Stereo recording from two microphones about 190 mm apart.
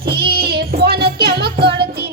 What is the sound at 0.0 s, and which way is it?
Child singing, 55° right (ahead or behind).